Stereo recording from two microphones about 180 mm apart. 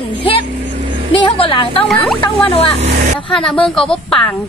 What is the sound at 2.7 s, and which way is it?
Vehicle, 40° right (ahead or behind).